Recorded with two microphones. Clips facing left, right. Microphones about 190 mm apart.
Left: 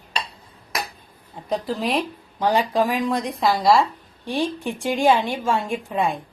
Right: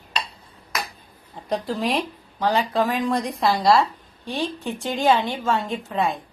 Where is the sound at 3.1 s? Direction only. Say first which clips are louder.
Even; centre (ahead or behind).